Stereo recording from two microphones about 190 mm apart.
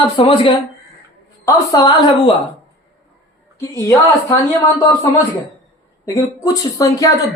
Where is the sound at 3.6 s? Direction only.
15° left (ahead or behind).